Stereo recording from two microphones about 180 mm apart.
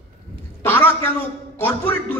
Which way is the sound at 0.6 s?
10° left (ahead or behind).